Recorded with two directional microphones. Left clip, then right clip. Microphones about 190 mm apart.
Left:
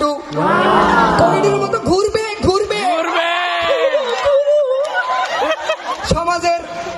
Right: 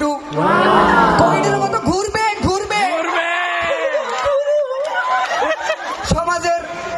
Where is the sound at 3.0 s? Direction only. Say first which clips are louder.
Left 2 dB; 10° left (ahead or behind).